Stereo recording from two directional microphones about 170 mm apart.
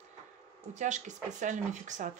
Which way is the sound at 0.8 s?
45° right (ahead or behind).